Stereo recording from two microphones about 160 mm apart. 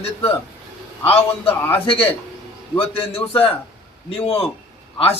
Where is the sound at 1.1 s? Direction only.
10° left (ahead or behind).